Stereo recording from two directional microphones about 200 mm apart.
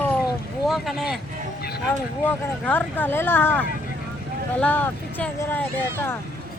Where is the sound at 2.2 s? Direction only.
10° left (ahead or behind).